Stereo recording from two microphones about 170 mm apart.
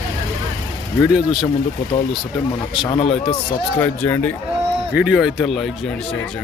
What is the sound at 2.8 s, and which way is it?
Speech, 35° left (ahead or behind).